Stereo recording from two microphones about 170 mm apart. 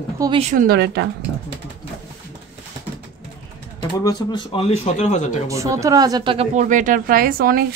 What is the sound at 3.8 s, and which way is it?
Speech, 25° left (ahead or behind).